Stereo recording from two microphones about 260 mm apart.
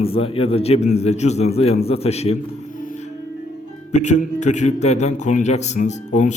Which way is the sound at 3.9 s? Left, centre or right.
Left.